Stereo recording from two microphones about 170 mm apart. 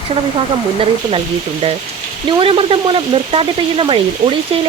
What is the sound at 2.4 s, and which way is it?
Speech, 30° right (ahead or behind).